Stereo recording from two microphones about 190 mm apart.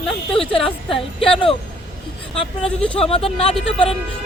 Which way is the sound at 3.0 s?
30° left (ahead or behind).